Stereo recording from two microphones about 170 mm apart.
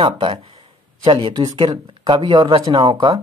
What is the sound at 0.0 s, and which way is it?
Speech, 30° right (ahead or behind).